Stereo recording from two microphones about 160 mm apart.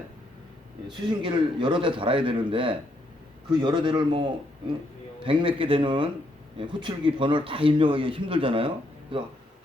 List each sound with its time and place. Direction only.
0.9 s a man's voice: 30° right (ahead or behind)